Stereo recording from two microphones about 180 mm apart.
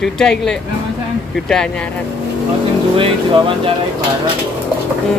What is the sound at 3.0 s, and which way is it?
Speech, 30° right (ahead or behind).